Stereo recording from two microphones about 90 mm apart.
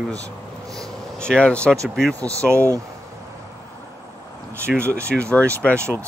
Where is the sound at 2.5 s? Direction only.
30° right (ahead or behind).